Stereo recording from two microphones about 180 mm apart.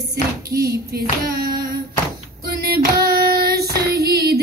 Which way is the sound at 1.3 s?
55° right (ahead or behind).